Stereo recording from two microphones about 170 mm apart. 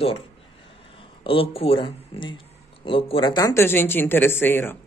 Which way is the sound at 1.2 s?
35° left (ahead or behind).